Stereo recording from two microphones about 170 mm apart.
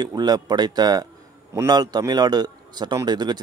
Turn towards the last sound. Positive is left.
turn(degrees=-25)  # may be behind; listen again after turning